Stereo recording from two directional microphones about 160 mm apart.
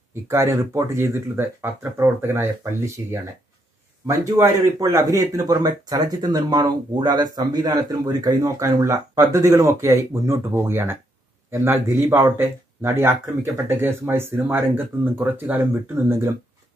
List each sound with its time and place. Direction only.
0.1 s speech: 15° right (ahead or behind)
4.4 s speech: 20° right (ahead or behind)